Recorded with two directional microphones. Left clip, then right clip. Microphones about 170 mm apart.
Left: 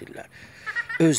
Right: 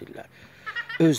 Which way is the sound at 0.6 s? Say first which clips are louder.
Left 3 dB; 45° right (ahead or behind).